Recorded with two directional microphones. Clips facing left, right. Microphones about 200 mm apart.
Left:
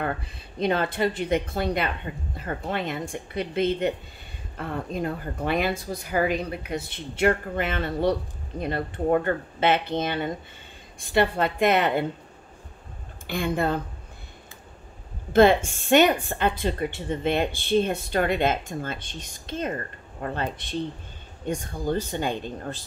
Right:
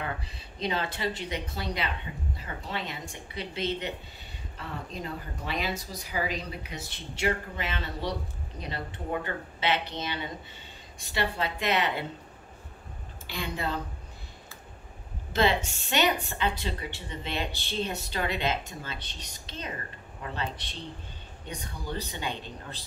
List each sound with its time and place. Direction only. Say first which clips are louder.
0.0 s a woman's voice: left 6 dB; 55° left (ahead or behind)
13.3 s a woman's voice: left 8 dB; 50° left (ahead or behind)
15.3 s a woman's voice: left 9 dB; 50° left (ahead or behind)